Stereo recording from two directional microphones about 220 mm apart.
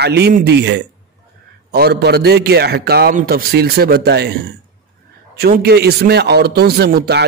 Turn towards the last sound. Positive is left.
turn(degrees=-45)  # may be behind; listen again after turning